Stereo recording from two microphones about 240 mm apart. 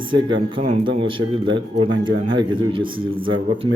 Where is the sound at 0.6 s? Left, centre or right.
Right.